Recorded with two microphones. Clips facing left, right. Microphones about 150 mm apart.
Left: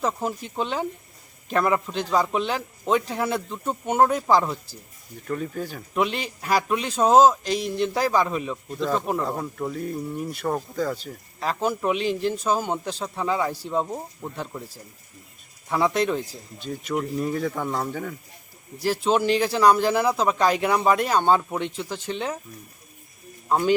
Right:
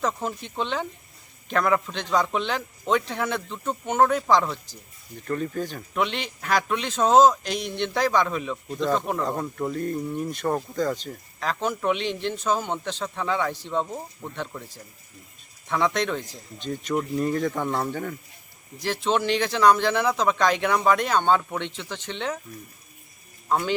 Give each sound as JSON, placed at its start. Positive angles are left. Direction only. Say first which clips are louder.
{"t": 0.0, "sound": "speech", "louder": "left 1 dB", "side_deg": 5}
{"t": 15.7, "sound": "speech", "louder": "left 2 dB", "side_deg": 10}
{"t": 23.5, "sound": "speech", "louder": "left 3 dB", "side_deg": 15}